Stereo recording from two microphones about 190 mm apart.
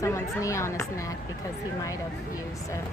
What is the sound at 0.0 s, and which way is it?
Speech, 15° left (ahead or behind).